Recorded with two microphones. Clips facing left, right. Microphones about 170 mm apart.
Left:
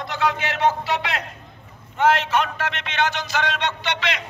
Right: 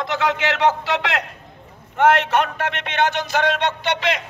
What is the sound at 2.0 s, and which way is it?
A man's voice, 60° right (ahead or behind).